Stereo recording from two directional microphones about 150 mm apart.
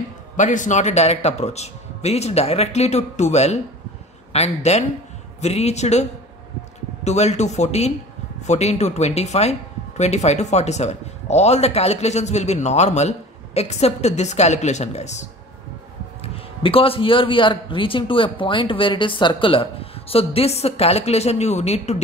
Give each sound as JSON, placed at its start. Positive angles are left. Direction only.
{"t": 0.4, "sound": "speech", "side_deg": 55}
{"t": 7.1, "sound": "speech", "side_deg": 50}
{"t": 16.2, "sound": "a man's voice", "side_deg": 40}